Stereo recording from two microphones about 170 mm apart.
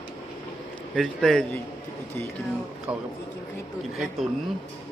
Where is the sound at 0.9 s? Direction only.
Centre (ahead or behind).